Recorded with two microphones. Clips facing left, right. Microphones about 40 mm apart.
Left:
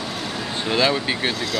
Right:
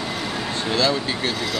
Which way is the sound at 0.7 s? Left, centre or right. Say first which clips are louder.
Left 2 dB; left.